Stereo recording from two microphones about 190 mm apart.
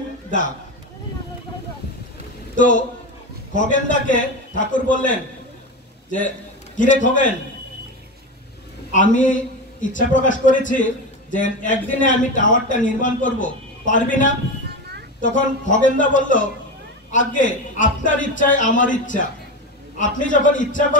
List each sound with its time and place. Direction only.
2.5 s a man's voice: 40° left (ahead or behind)
6.8 s a man's voice: 40° left (ahead or behind)
8.9 s a man's voice: 45° left (ahead or behind)